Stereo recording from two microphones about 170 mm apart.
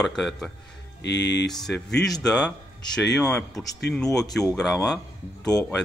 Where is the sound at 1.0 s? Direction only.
90° left.